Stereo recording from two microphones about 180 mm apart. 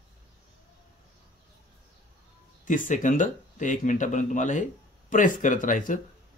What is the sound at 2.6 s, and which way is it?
Speech, 45° left (ahead or behind).